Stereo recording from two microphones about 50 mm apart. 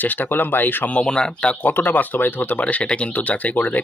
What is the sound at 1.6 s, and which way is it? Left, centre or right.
Speech, left.